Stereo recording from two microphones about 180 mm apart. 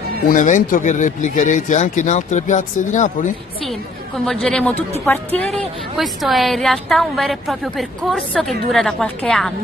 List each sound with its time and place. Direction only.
0.3 s speech: 45° left (ahead or behind)
4.3 s a woman's voice: 5° left (ahead or behind)